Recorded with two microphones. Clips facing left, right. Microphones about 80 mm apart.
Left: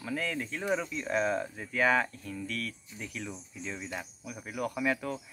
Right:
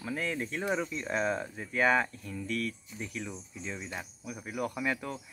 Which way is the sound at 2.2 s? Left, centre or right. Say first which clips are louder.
Right 2 dB; right.